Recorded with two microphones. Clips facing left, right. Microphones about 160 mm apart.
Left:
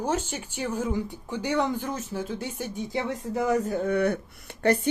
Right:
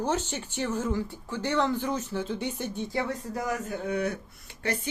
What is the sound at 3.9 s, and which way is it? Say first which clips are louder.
Speech: left 5 dB; 55° left (ahead or behind).